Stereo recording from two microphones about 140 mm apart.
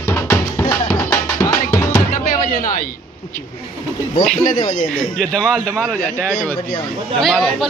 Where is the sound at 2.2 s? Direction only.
80° left.